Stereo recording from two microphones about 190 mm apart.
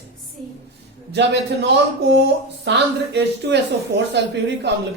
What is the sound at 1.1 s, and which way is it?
Speech, 65° right (ahead or behind).